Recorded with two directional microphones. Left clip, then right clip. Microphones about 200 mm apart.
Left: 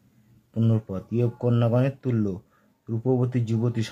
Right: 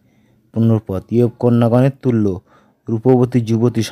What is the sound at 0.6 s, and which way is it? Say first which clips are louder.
Speech: right 10 dB; 35° right (ahead or behind).